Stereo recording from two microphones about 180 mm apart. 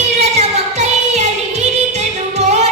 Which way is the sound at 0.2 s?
40° right (ahead or behind).